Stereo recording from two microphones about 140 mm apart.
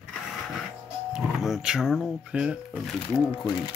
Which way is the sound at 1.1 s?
5° right (ahead or behind).